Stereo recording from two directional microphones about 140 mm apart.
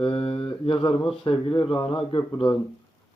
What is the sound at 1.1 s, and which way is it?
Speech, 40° left (ahead or behind).